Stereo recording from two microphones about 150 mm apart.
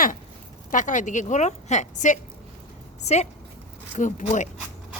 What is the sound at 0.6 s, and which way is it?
A woman's voice, 55° left (ahead or behind).